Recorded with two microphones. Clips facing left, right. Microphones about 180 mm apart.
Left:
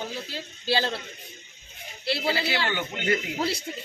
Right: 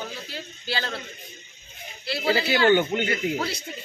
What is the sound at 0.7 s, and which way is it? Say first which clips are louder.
Speech: left 5 dB; 30° left (ahead or behind).